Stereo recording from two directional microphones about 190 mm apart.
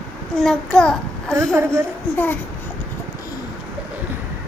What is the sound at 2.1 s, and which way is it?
Speech, 10° left (ahead or behind).